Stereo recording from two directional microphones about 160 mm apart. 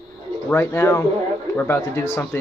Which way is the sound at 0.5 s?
15° left (ahead or behind).